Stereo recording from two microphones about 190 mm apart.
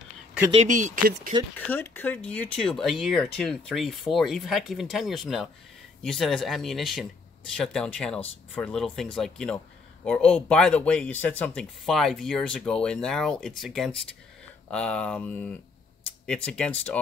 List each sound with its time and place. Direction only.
0.5 s speech: 35° right (ahead or behind)
1.7 s speech: 10° left (ahead or behind)